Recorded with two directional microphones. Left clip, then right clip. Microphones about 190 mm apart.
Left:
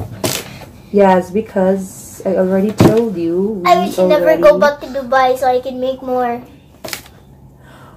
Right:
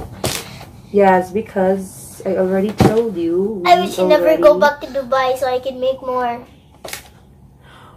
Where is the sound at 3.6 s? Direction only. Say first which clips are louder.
Left 1 dB; 15° right (ahead or behind).